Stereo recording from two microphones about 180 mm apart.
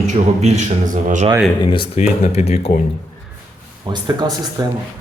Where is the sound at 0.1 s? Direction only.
40° right (ahead or behind).